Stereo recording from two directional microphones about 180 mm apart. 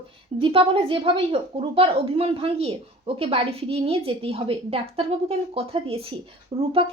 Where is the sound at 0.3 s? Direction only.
30° right (ahead or behind).